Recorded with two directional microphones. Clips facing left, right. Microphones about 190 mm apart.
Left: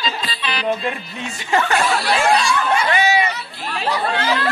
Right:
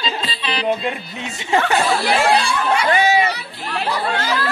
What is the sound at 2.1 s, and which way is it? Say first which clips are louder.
Speech: left 1 dB; 55° right (ahead or behind).